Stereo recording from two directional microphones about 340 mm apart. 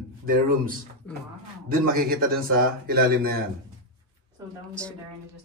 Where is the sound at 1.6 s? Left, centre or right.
Right.